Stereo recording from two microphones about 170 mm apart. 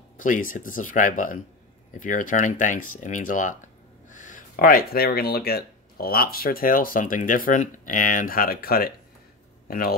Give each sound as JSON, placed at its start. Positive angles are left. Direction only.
{"t": 0.2, "sound": "a man's voice", "side_deg": 50}